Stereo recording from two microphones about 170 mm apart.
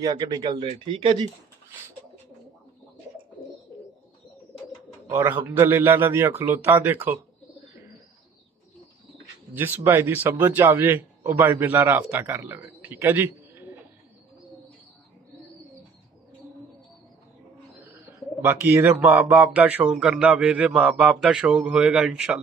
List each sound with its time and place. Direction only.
0.0 s speech: 20° right (ahead or behind)
0.6 s speech: 35° right (ahead or behind)
5.1 s a man's voice: 15° right (ahead or behind)
9.5 s a man's voice: 10° right (ahead or behind)
18.4 s a man's voice: 10° right (ahead or behind)